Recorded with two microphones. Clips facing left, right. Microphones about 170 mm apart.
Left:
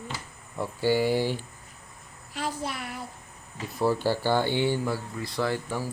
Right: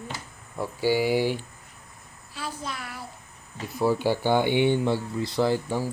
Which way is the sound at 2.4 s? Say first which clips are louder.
Left 2 dB; 30° left (ahead or behind).